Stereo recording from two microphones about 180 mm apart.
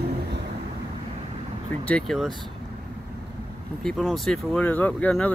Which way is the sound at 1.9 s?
5° left (ahead or behind).